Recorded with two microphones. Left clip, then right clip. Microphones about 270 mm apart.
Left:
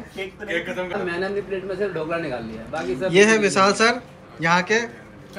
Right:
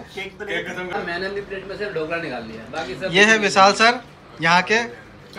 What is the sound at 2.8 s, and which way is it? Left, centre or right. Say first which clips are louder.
A man's voice: even; centre.